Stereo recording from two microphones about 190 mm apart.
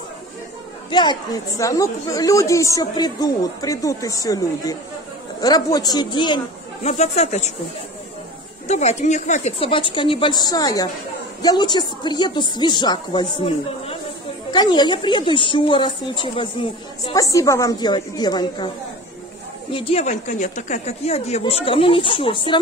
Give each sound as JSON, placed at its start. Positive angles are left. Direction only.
{"t": 0.8, "sound": "speech", "side_deg": 25}
{"t": 8.6, "sound": "speech", "side_deg": 35}
{"t": 19.7, "sound": "a woman's voice", "side_deg": 30}